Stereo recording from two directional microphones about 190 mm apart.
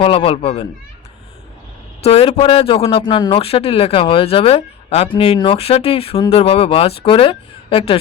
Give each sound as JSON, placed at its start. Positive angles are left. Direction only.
{"t": 0.0, "sound": "speech", "side_deg": 30}
{"t": 2.0, "sound": "speech", "side_deg": 30}